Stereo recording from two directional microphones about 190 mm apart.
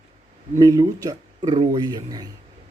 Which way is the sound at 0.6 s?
20° right (ahead or behind).